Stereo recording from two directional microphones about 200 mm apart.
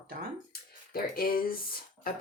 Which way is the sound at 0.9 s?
50° left (ahead or behind).